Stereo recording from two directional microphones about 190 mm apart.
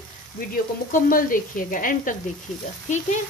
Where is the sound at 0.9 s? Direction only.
45° left (ahead or behind).